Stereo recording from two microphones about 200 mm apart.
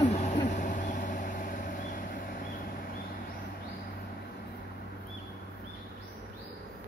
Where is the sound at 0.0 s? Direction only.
35° left (ahead or behind).